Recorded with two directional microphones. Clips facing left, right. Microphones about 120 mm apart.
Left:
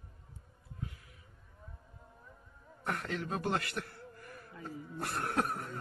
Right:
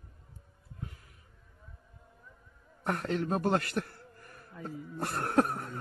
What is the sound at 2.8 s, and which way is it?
A man's voice, 40° right (ahead or behind).